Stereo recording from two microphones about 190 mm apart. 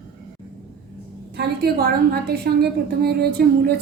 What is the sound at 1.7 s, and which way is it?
A woman's voice, 55° right (ahead or behind).